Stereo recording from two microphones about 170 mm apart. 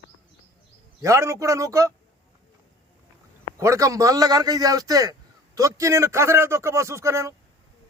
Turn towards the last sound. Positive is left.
turn(degrees=-15)  # may be behind; listen again after turning